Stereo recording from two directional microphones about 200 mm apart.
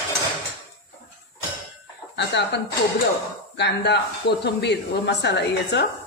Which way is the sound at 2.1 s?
60° left (ahead or behind).